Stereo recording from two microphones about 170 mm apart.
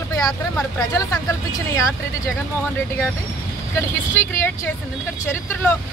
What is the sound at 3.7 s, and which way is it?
Speech, 15° left (ahead or behind).